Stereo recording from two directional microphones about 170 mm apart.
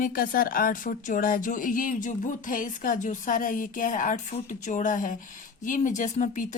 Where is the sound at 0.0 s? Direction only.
55° left (ahead or behind).